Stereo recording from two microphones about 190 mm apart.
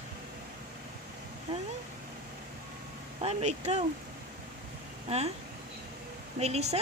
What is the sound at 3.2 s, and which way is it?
Speech, 35° right (ahead or behind).